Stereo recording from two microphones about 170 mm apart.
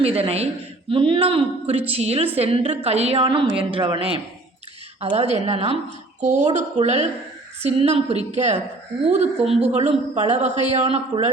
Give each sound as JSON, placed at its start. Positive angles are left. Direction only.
{"t": 0.0, "sound": "a woman's voice", "side_deg": -35}